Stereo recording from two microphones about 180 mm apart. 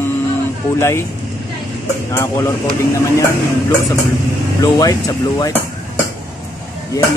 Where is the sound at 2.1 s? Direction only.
15° left (ahead or behind).